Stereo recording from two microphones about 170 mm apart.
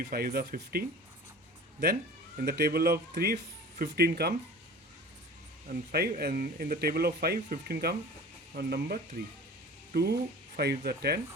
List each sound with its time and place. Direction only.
0.0 s speech: 60° right (ahead or behind)
2.4 s speech: 65° right (ahead or behind)
5.6 s speech: 65° right (ahead or behind)